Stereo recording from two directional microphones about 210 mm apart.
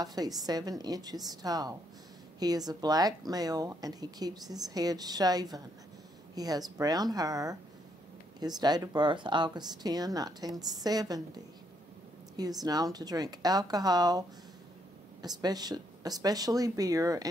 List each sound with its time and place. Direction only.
0.0 s speech: 20° right (ahead or behind)
12.6 s speech: 20° right (ahead or behind)
15.2 s speech: 20° right (ahead or behind)